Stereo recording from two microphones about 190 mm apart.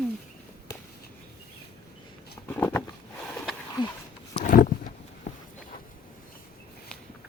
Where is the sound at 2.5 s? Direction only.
10° left (ahead or behind).